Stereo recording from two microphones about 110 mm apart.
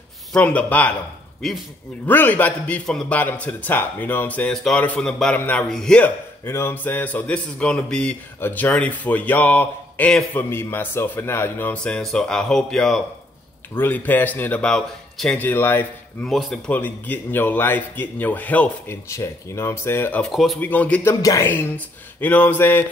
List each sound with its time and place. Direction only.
0.3 s speech: 10° left (ahead or behind)
1.4 s speech: 5° left (ahead or behind)
2.0 s speech: 15° left (ahead or behind)
13.7 s speech: 15° left (ahead or behind)
16.3 s speech: centre (ahead or behind)
16.7 s speech: 15° left (ahead or behind)
19.0 s speech: 25° left (ahead or behind)
20.2 s speech: centre (ahead or behind)
20.6 s speech: 15° left (ahead or behind)
21.5 s speech: 20° left (ahead or behind)